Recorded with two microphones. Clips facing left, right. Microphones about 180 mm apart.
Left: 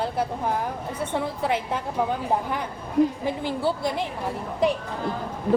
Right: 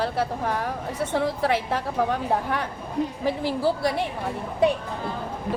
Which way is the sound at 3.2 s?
90° right.